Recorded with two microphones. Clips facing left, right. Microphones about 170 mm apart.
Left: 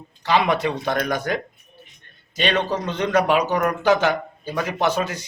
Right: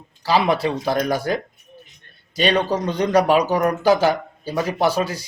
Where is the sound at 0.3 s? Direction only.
35° right (ahead or behind).